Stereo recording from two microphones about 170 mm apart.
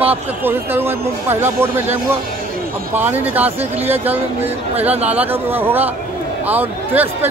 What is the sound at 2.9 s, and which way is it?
Speech, 10° right (ahead or behind).